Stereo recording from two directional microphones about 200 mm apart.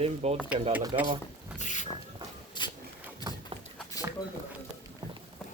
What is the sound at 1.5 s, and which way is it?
Boat, 35° left (ahead or behind).